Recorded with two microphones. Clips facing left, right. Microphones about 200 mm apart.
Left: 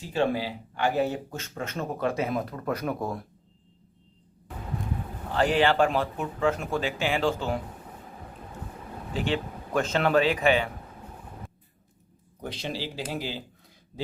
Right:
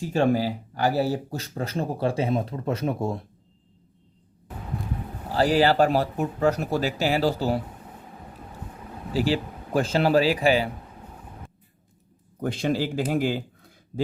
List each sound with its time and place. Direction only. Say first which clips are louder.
0.0 s speech: right 4 dB; 45° right (ahead or behind); by 3.2 s 25° right (ahead or behind)
5.3 s speech: right 3 dB; 35° right (ahead or behind)
9.1 s speech: right 4 dB; 35° right (ahead or behind)
12.4 s speech: right 9 dB; 50° right (ahead or behind)